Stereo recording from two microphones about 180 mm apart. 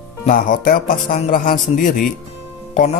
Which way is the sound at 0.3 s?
50° left (ahead or behind).